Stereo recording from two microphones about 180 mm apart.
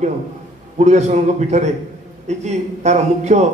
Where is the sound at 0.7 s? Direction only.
40° right (ahead or behind).